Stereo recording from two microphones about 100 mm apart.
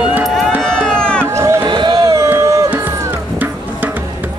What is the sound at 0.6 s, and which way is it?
Run, 5° left (ahead or behind).